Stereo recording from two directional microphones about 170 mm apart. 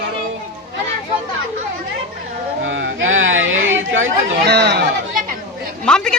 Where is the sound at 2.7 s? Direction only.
90° right.